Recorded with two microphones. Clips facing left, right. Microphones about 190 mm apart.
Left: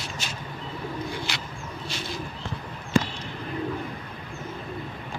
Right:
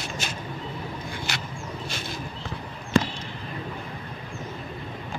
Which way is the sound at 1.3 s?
45° right (ahead or behind).